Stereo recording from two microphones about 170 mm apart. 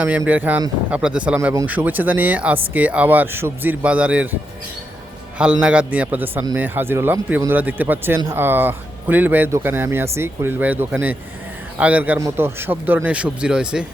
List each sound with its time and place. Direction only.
0.3 s speech: 10° right (ahead or behind)
5.4 s speech: 5° right (ahead or behind)